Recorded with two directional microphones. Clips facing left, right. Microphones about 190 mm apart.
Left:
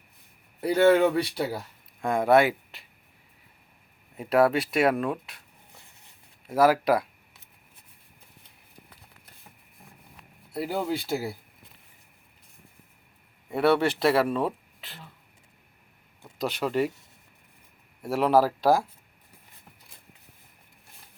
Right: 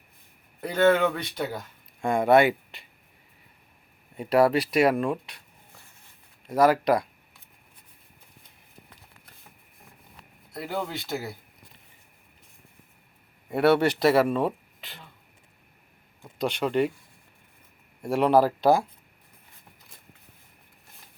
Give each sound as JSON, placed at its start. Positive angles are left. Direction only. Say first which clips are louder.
{"t": 0.6, "sound": "speech", "louder": "left 2 dB", "side_deg": 10}
{"t": 1.1, "sound": "speech", "louder": "left 4 dB", "side_deg": 35}
{"t": 1.5, "sound": "speech", "louder": "left 2 dB", "side_deg": 5}
{"t": 4.2, "sound": "speech", "louder": "right 1 dB", "side_deg": 0}
{"t": 6.5, "sound": "speech", "louder": "even", "side_deg": 5}
{"t": 10.5, "sound": "speech", "louder": "left 3 dB", "side_deg": 10}
{"t": 13.5, "sound": "speech", "louder": "right 2 dB", "side_deg": 0}
{"t": 16.4, "sound": "speech", "louder": "right 2 dB", "side_deg": 5}
{"t": 18.0, "sound": "speech", "louder": "right 1 dB", "side_deg": 5}